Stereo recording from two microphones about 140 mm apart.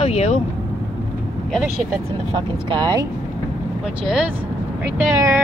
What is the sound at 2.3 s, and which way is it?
Speech, 35° right (ahead or behind).